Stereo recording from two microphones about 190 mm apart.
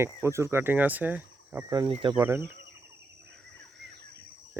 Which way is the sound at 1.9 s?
25° right (ahead or behind).